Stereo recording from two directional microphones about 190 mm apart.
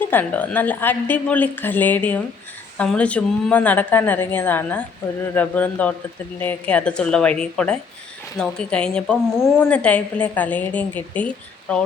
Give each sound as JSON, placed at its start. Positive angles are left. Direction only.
{"t": 0.1, "sound": "a woman's voice", "side_deg": 10}